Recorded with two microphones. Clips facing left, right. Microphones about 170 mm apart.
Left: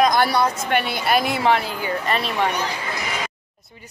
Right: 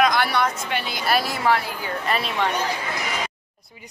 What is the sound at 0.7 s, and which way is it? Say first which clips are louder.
Speech: left 6 dB; 60° left (ahead or behind).